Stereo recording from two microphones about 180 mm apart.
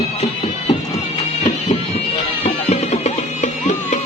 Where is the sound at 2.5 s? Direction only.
35° left (ahead or behind).